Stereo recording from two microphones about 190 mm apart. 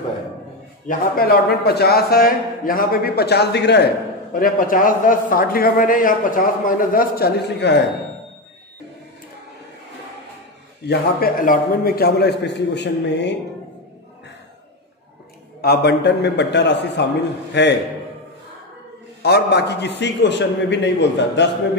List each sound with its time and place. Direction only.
0.8 s a man's voice: 55° left (ahead or behind)
10.9 s a man's voice: 50° left (ahead or behind)
15.6 s a man's voice: 60° left (ahead or behind)
19.2 s a man's voice: 60° left (ahead or behind)